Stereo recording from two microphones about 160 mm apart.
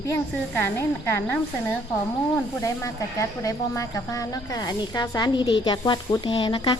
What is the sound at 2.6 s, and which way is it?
Speech, 20° left (ahead or behind).